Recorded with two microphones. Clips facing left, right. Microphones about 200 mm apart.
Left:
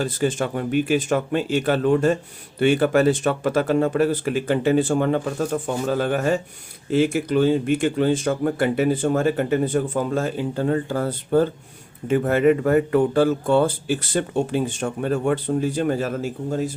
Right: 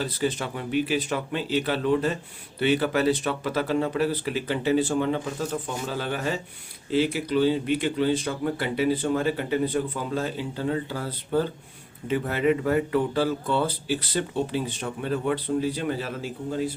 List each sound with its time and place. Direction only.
0.0 s speech: 50° left (ahead or behind)